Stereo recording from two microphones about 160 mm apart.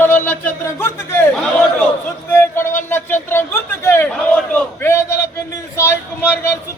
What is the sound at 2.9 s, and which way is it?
Speech, 15° left (ahead or behind).